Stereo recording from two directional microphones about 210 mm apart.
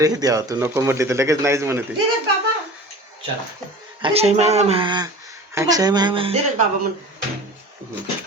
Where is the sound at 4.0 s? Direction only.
30° right (ahead or behind).